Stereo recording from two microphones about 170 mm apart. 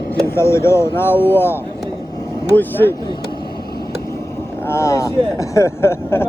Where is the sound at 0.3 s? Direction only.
15° left (ahead or behind).